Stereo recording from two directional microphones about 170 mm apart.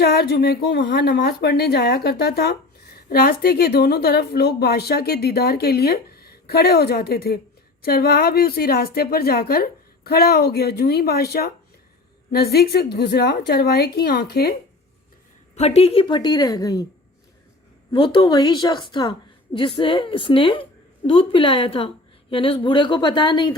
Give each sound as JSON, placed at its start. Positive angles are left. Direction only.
{"t": 0.0, "sound": "a woman's voice", "side_deg": 65}
{"t": 15.5, "sound": "a woman's voice", "side_deg": 40}
{"t": 17.9, "sound": "a woman's voice", "side_deg": 25}